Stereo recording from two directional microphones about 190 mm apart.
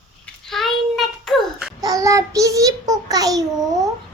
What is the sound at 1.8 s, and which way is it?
A child's voice, 15° right (ahead or behind).